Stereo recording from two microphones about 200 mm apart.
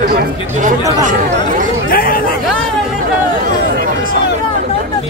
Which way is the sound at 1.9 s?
45° left (ahead or behind).